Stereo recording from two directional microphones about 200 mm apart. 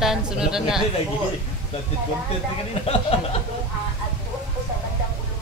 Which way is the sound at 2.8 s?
30° left (ahead or behind).